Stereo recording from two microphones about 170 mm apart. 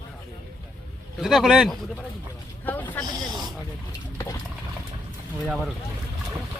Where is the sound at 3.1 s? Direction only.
25° right (ahead or behind).